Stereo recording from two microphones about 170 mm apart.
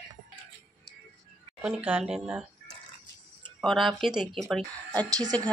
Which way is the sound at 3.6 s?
Centre (ahead or behind).